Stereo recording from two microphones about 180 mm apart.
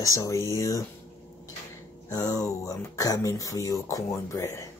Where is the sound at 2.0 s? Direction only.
20° left (ahead or behind).